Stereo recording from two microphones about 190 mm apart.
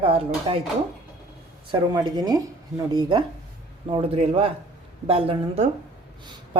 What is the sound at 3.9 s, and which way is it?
A woman's voice, 30° right (ahead or behind).